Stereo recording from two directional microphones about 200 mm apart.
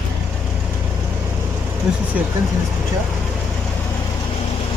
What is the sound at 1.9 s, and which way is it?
Speech, 5° right (ahead or behind).